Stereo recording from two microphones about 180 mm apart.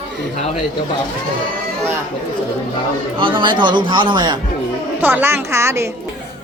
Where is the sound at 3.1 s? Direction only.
30° right (ahead or behind).